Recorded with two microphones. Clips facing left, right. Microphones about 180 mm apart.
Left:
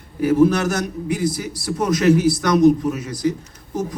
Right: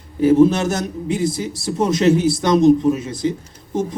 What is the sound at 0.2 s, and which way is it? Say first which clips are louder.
A man's voice: right 3 dB; 25° right (ahead or behind).